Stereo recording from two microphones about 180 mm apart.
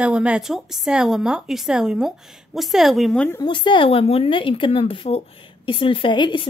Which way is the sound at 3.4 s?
25° left (ahead or behind).